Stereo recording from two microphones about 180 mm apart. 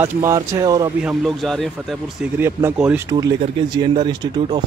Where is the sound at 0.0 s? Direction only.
15° right (ahead or behind).